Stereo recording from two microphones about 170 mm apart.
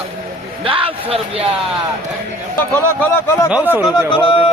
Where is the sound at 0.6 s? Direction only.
30° right (ahead or behind).